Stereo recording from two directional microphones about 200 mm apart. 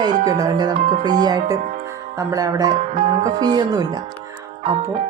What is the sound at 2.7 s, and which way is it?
Speech, 35° right (ahead or behind).